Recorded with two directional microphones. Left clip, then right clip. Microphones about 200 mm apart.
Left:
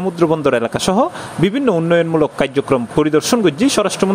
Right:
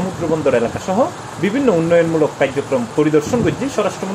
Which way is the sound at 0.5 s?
50° left (ahead or behind).